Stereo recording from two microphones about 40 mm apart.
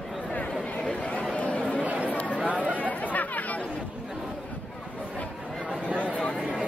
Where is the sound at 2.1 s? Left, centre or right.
Left.